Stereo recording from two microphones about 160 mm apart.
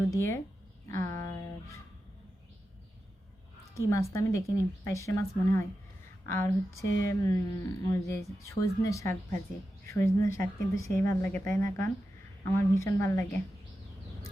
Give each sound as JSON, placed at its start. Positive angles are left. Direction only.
{"t": 0.0, "sound": "a woman's voice", "side_deg": 15}
{"t": 3.8, "sound": "a woman's voice", "side_deg": 20}